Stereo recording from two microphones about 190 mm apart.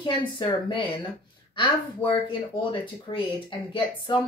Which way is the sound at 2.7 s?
25° left (ahead or behind).